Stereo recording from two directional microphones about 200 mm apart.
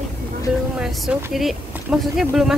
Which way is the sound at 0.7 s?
5° right (ahead or behind).